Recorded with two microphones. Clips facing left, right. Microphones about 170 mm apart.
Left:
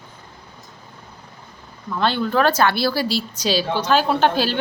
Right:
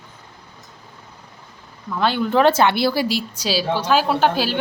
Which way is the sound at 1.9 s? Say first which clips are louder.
Right 1 dB; 10° right (ahead or behind).